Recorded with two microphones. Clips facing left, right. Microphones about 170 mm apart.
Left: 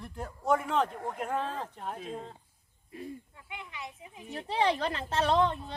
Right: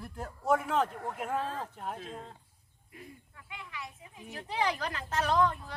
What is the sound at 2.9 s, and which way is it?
A child's voice, 30° left (ahead or behind).